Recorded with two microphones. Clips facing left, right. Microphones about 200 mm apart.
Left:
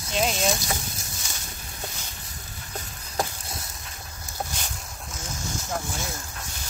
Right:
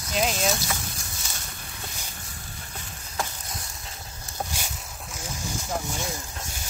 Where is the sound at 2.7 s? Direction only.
35° left (ahead or behind).